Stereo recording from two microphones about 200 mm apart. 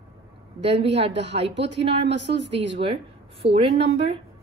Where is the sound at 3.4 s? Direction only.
30° right (ahead or behind).